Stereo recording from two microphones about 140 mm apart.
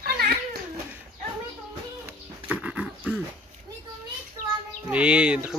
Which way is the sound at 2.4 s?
10° right (ahead or behind).